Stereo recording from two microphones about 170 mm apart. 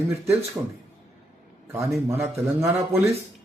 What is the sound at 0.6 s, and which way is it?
Speech, 10° right (ahead or behind).